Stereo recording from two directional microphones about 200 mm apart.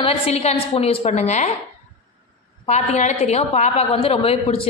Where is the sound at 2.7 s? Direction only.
35° left (ahead or behind).